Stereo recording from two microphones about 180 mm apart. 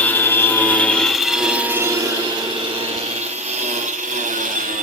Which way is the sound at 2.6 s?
30° right (ahead or behind).